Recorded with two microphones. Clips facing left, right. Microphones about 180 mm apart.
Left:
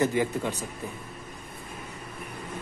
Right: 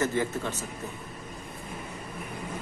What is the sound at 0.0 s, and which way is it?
Speech, 15° left (ahead or behind).